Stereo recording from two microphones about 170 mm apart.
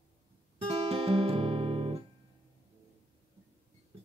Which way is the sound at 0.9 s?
35° right (ahead or behind).